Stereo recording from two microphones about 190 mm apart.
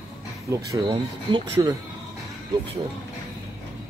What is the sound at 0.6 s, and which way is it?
Speech, 15° right (ahead or behind).